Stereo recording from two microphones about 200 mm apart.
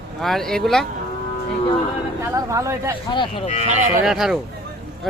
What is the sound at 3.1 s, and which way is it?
Moo, 25° left (ahead or behind).